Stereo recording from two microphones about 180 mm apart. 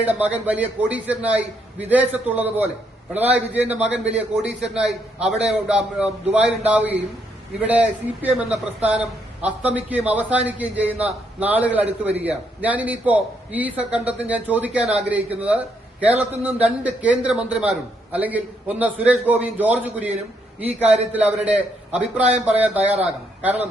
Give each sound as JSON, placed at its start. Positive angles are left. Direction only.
{"t": 0.0, "sound": "a man's voice", "side_deg": -10}